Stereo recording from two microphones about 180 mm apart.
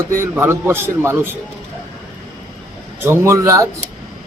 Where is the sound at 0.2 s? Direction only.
15° right (ahead or behind).